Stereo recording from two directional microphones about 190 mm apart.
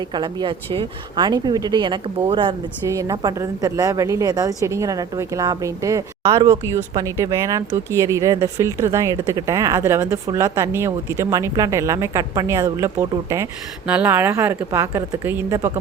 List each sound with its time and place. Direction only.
0.1 s speech: 25° right (ahead or behind)